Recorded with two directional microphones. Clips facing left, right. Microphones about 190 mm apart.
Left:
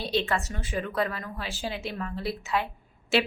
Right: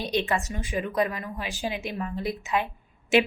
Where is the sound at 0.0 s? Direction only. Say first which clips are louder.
Right 1 dB; 15° right (ahead or behind).